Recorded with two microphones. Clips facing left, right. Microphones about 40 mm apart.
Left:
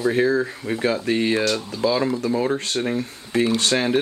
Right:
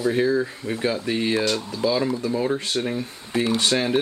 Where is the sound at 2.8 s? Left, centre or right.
Centre.